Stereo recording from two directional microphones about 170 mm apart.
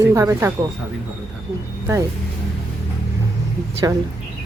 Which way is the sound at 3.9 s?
15° right (ahead or behind).